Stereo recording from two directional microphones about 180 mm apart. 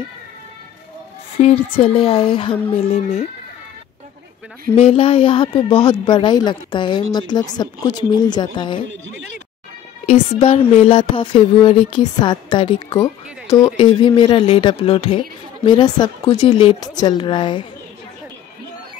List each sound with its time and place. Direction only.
1.4 s speech: 35° left (ahead or behind)
4.7 s speech: 35° left (ahead or behind)
10.0 s speech: 35° left (ahead or behind)